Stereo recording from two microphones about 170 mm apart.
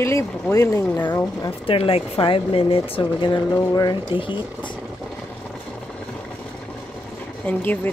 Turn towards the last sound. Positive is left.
turn(degrees=10)  # may be behind; listen again after turning